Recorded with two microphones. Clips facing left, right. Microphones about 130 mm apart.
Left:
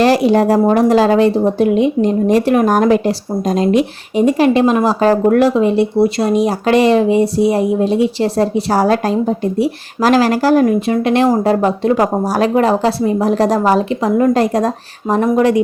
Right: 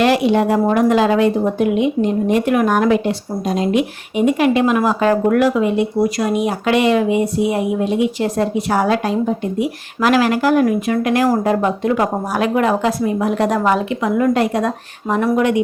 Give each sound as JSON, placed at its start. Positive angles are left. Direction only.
{"t": 0.0, "sound": "a woman's voice", "side_deg": 35}